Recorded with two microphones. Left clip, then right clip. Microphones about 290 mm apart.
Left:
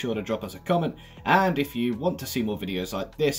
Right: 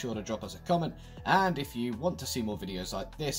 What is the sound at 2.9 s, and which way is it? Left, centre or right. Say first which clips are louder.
Speech: left 11 dB; right.